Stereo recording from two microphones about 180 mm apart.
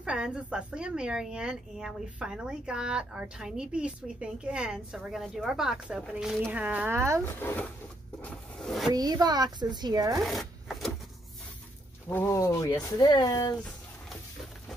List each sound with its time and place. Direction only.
0.0 s speech: 5° right (ahead or behind)
7.2 s speech: 10° left (ahead or behind)
8.2 s zipper: centre (ahead or behind)
8.9 s speech: 20° right (ahead or behind)
10.2 s chopping: centre (ahead or behind)
12.1 s speech: 15° left (ahead or behind)